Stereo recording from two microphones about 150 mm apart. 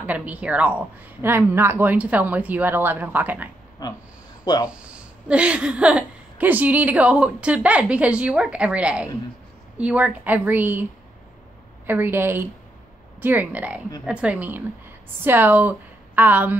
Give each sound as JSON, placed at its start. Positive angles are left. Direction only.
{"t": 0.0, "sound": "a woman's voice", "side_deg": -10}
{"t": 3.8, "sound": "speech", "side_deg": 25}
{"t": 4.6, "sound": "a woman's voice", "side_deg": -5}